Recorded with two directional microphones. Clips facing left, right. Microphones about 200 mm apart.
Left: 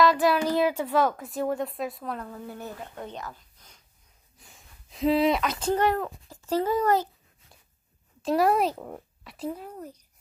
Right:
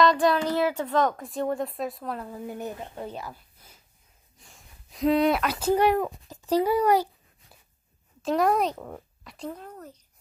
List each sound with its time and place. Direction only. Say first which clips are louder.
0.0 s a child's voice: even; 5° left (ahead or behind)
2.2 s speech: right 4 dB; 15° right (ahead or behind)
3.0 s a sound: right 2 dB; 10° right (ahead or behind)
4.4 s speech: right 1 dB; centre (ahead or behind)
8.2 s speech: left 1 dB; centre (ahead or behind)